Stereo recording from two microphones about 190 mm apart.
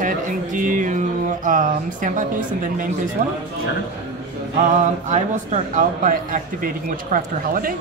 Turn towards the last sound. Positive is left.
turn(degrees=-45)  # may be behind; listen again after turning